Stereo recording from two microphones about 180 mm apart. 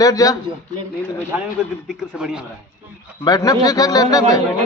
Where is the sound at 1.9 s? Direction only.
Centre (ahead or behind).